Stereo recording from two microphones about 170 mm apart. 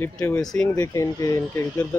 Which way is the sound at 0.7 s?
20° left (ahead or behind).